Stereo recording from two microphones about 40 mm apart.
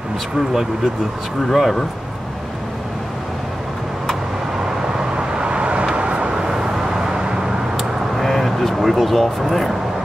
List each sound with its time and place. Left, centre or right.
1.5 s speech: centre
4.9 s vehicle: right
8.2 s vehicle: centre